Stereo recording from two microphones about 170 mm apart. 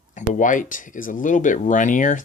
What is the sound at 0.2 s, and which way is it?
Speech, 50° left (ahead or behind).